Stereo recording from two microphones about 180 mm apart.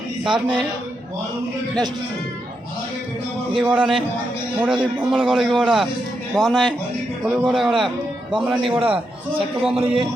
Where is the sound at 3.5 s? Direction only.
5° right (ahead or behind).